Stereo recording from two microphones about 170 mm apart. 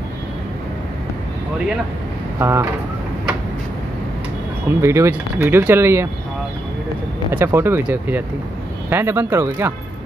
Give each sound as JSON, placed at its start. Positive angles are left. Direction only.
{"t": 2.3, "sound": "speech", "side_deg": -15}
{"t": 4.6, "sound": "speech", "side_deg": -15}
{"t": 7.2, "sound": "speech", "side_deg": -15}